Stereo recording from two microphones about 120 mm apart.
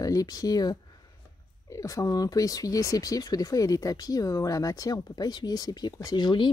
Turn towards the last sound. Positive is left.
turn(degrees=40)  # may be behind; listen again after turning